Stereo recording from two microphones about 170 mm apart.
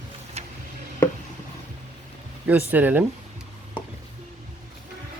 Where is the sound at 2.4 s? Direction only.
10° right (ahead or behind).